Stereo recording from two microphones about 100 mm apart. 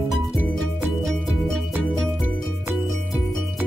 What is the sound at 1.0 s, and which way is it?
Music, centre (ahead or behind).